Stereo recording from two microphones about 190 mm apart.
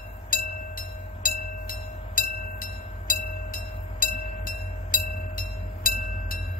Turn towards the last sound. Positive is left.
turn(degrees=45)  # may be behind; listen again after turning